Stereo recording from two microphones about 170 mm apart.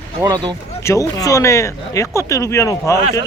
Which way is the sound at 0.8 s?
20° left (ahead or behind).